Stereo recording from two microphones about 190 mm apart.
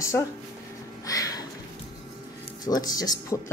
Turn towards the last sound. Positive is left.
turn(degrees=20)  # may be behind; listen again after turning